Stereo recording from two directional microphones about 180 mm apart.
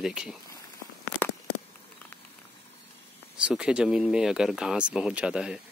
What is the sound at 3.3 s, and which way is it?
Speech, 5° right (ahead or behind).